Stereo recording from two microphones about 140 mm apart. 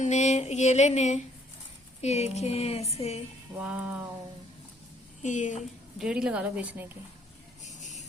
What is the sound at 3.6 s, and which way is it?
Speech, 10° right (ahead or behind).